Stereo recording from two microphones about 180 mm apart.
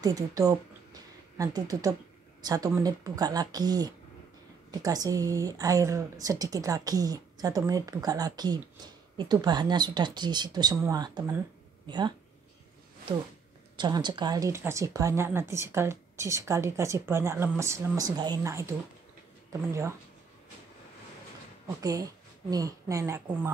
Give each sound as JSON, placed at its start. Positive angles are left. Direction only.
{"t": 0.0, "sound": "speech", "side_deg": -20}
{"t": 13.7, "sound": "speech", "side_deg": -25}
{"t": 21.6, "sound": "a woman's voice", "side_deg": -20}